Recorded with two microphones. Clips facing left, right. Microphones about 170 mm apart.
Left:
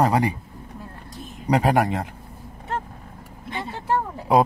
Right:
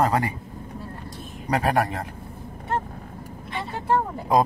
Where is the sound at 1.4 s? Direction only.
15° left (ahead or behind).